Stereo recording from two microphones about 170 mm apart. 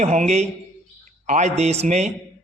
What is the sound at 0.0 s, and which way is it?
A man's voice, 40° right (ahead or behind).